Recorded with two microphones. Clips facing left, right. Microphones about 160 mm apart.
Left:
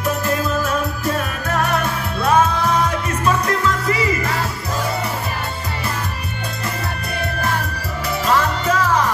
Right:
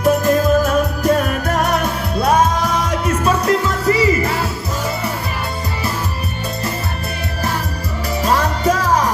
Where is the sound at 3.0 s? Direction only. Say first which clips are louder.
Right 3 dB; 30° right (ahead or behind).